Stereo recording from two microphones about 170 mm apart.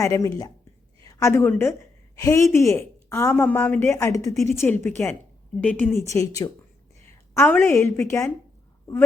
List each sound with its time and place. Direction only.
0.0 s speech: 20° left (ahead or behind)